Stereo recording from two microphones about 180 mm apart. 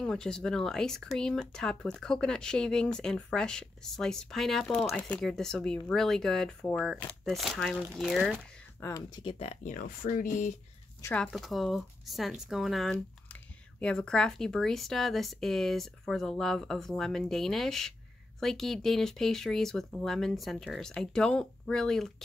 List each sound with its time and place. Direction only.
0.0 s speech: 5° left (ahead or behind)
8.7 s speech: 15° left (ahead or behind)
9.2 s speech: 30° left (ahead or behind); by 10.5 s 50° left (ahead or behind)
11.0 s speech: 15° left (ahead or behind)
11.3 s speech: centre (ahead or behind)